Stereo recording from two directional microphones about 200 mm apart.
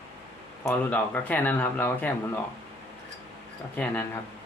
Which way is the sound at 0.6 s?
10° left (ahead or behind).